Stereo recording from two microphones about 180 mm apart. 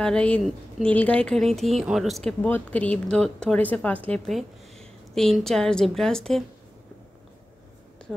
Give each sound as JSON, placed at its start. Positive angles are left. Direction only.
{"t": 0.0, "sound": "speech", "side_deg": 5}